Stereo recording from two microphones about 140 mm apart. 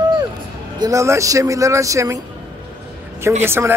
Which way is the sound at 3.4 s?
15° right (ahead or behind).